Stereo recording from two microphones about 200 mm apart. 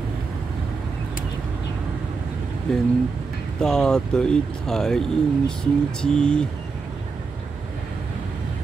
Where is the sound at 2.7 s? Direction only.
5° left (ahead or behind).